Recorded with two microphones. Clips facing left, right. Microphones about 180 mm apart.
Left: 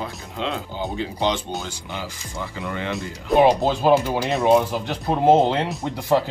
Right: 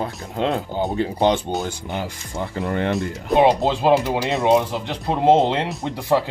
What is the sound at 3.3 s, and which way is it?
Speech, 25° right (ahead or behind).